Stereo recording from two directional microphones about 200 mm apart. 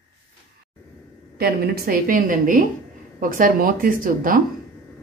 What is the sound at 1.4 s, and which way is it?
Speech, 50° right (ahead or behind).